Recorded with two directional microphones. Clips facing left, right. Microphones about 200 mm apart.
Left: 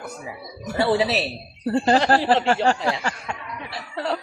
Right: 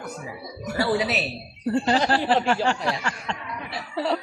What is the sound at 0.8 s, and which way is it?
Speech, 25° left (ahead or behind).